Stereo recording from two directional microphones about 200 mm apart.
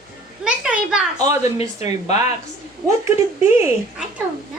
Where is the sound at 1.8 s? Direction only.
35° left (ahead or behind).